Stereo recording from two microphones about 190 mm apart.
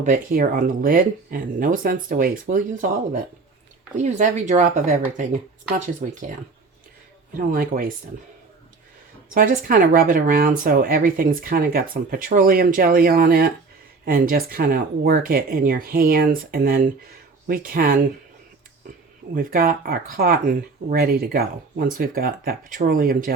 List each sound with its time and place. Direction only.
0.0 s speech: 45° right (ahead or behind)
7.3 s speech: 45° right (ahead or behind)
9.3 s speech: 45° right (ahead or behind)
19.3 s speech: 50° right (ahead or behind)